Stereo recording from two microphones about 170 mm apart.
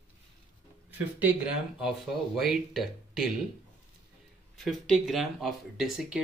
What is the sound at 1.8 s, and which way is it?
Speech, centre (ahead or behind).